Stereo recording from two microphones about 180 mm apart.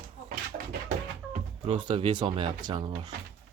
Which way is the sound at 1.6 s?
30° right (ahead or behind).